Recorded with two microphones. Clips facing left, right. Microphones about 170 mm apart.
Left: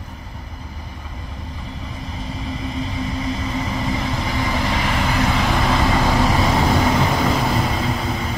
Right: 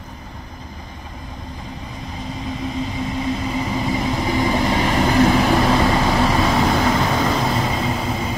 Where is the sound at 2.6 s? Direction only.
5° right (ahead or behind).